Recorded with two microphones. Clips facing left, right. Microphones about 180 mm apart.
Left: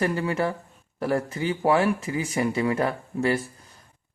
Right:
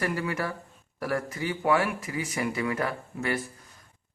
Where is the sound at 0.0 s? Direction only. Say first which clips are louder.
Left 5 dB; 30° left (ahead or behind).